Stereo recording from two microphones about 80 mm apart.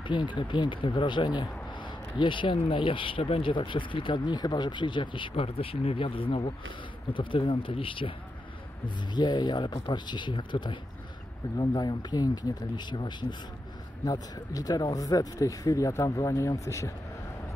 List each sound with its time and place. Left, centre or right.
0.0 s speech: left
8.8 s speech: left
11.5 s speech: left
14.0 s speech: left